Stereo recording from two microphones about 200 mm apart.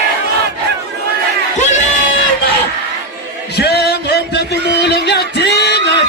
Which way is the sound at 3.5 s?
55° left (ahead or behind).